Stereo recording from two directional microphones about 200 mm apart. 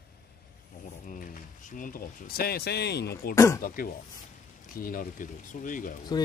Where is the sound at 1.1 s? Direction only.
45° left (ahead or behind).